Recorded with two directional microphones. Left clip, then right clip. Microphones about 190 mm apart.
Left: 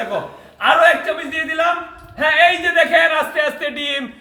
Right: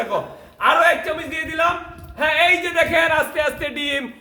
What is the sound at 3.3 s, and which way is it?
Speech, 30° right (ahead or behind).